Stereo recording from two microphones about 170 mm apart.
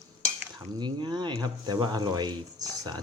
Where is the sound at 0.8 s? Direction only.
25° right (ahead or behind).